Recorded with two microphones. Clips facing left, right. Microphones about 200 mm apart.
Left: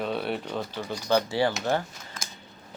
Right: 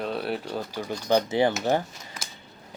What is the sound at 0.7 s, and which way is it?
Speech, 15° right (ahead or behind).